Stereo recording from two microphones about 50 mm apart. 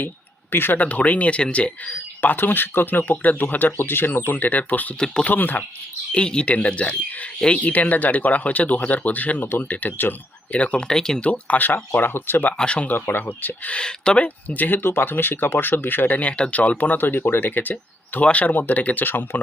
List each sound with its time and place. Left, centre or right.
0.5 s speech: left
0.8 s speech: left
2.3 s speech: left
4.9 s speech: centre
5.2 s speech: left
6.1 s speech: centre; by 10.2 s left
10.5 s speech: left
11.2 s speech: left
12.5 s speech: left
12.9 s speech: left
13.7 s speech: centre
14.4 s speech: left
14.8 s speech: left